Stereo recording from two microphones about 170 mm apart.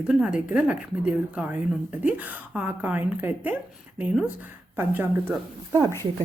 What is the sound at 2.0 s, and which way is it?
A woman's voice, 10° right (ahead or behind).